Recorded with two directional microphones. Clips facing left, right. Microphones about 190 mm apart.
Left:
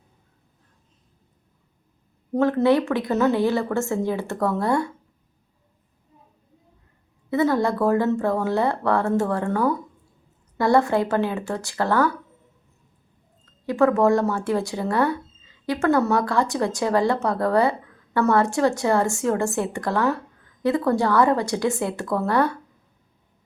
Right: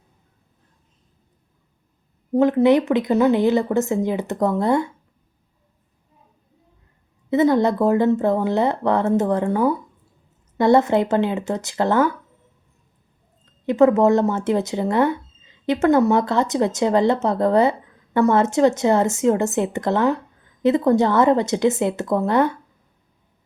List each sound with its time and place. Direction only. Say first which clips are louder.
2.3 s speech: right 3 dB; 15° right (ahead or behind)
7.3 s speech: right 4 dB; 20° right (ahead or behind)
13.4 s speech: right 4 dB; 20° right (ahead or behind)